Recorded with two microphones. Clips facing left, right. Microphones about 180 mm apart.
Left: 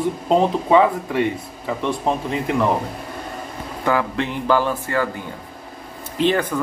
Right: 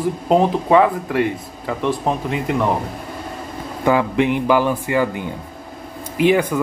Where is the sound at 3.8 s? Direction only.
15° right (ahead or behind).